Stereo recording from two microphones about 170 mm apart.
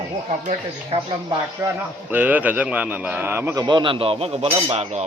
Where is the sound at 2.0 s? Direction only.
10° right (ahead or behind).